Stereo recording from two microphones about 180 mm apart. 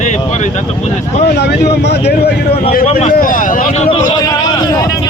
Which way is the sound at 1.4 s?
65° left (ahead or behind).